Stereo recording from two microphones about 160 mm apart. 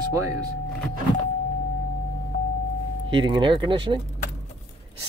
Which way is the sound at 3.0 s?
30° right (ahead or behind).